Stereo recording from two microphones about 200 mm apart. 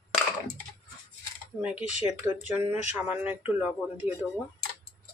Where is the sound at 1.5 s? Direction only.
5° right (ahead or behind).